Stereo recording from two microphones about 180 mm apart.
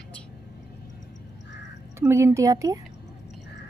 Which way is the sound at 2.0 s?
15° right (ahead or behind).